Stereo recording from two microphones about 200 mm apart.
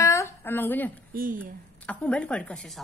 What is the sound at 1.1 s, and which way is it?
Speech, 45° right (ahead or behind).